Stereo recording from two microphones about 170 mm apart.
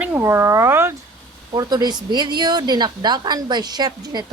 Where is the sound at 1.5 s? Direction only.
25° right (ahead or behind).